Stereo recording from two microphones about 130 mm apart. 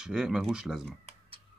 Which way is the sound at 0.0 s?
5° right (ahead or behind).